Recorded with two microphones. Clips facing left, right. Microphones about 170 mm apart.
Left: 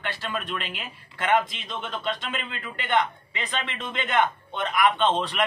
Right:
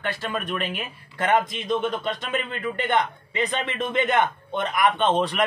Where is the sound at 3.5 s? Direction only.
15° right (ahead or behind).